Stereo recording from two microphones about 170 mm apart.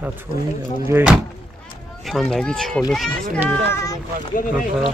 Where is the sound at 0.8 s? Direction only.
10° right (ahead or behind).